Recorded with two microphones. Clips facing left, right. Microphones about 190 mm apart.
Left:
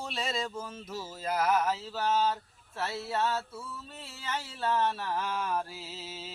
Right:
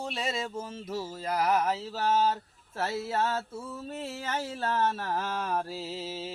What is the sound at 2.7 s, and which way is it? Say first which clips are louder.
Speech: right 3 dB; 45° right (ahead or behind).